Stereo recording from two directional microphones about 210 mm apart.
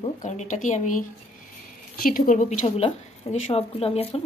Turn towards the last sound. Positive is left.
turn(degrees=30)  # may be behind; listen again after turning